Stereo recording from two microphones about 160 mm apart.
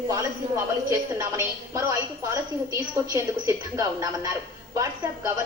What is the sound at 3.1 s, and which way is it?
A woman's voice, 20° right (ahead or behind).